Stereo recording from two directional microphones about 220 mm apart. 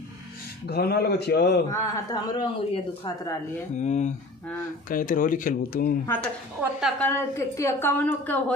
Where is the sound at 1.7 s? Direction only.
20° left (ahead or behind).